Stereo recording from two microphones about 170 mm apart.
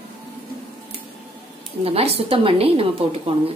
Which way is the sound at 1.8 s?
35° right (ahead or behind).